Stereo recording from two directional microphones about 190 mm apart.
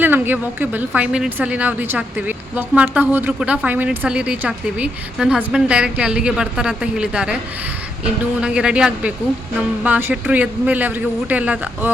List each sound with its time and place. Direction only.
0.0 s a woman's voice: 10° right (ahead or behind)
8.4 s a woman's voice: 5° right (ahead or behind)